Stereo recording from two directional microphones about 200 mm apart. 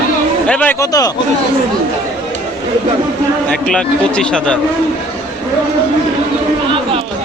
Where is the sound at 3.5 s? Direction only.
5° left (ahead or behind).